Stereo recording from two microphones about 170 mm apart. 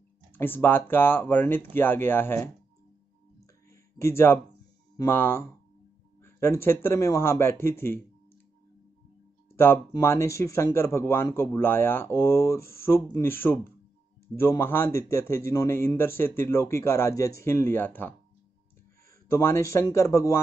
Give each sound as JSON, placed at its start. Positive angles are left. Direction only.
{"t": 0.3, "sound": "speech", "side_deg": 10}
{"t": 3.7, "sound": "a sound", "side_deg": 15}
{"t": 4.9, "sound": "speech", "side_deg": 15}
{"t": 9.6, "sound": "speech", "side_deg": 15}
{"t": 19.3, "sound": "speech", "side_deg": 15}